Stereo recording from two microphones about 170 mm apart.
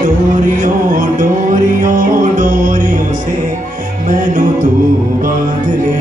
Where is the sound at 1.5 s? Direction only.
50° right (ahead or behind).